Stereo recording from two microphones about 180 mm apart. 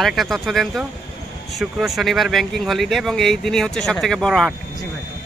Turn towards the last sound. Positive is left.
turn(degrees=0)  # may be behind; listen again after turning